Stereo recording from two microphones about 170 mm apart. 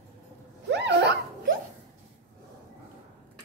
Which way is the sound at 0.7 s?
90° right.